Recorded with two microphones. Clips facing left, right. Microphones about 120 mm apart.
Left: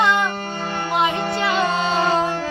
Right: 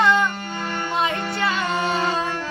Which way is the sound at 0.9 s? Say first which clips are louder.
Left 4 dB; 20° left (ahead or behind).